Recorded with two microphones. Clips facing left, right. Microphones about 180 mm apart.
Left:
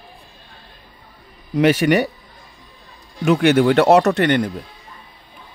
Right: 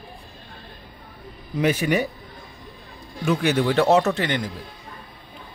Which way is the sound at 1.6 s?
75° left (ahead or behind).